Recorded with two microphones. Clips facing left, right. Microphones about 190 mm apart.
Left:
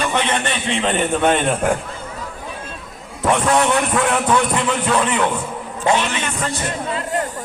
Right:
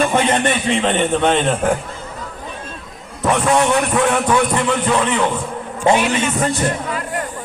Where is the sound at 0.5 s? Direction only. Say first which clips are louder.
Right 3 dB; centre (ahead or behind).